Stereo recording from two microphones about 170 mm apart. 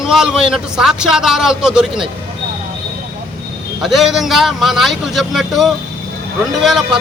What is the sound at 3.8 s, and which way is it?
A man's voice, centre (ahead or behind).